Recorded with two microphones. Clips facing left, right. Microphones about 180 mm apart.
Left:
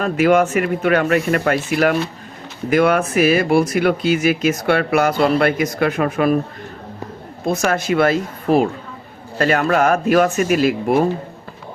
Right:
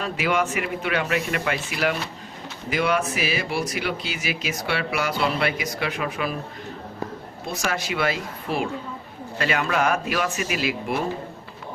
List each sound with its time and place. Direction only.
0.0 s speech: 50° left (ahead or behind)
7.4 s speech: 50° left (ahead or behind)